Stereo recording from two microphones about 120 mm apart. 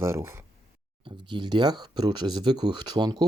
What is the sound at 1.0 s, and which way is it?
Speech, 40° right (ahead or behind).